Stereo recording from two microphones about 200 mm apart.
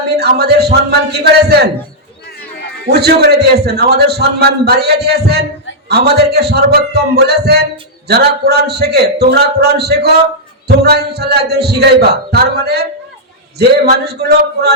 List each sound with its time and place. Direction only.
0.2 s a man's voice: 55° right (ahead or behind)
2.8 s a man's voice: 55° right (ahead or behind)
13.9 s a man's voice: 55° right (ahead or behind)